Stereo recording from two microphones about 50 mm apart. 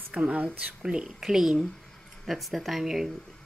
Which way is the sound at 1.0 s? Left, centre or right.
Centre.